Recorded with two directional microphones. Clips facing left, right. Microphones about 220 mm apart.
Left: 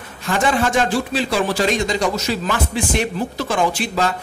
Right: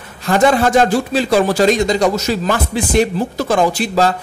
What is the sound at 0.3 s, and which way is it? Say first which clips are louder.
A man's voice: right 6 dB; 40° right (ahead or behind).